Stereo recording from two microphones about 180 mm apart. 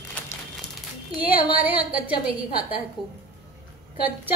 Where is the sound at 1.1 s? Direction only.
10° right (ahead or behind).